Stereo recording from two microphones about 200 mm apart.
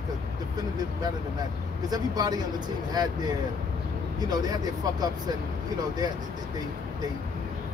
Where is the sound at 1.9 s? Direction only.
20° right (ahead or behind).